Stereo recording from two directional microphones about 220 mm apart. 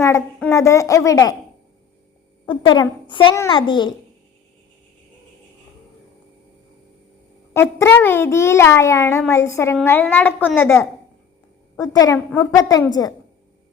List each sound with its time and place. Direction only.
0.5 s a child's voice: 15° left (ahead or behind)
2.5 s a child's voice: 20° left (ahead or behind)
7.5 s a child's voice: 10° left (ahead or behind)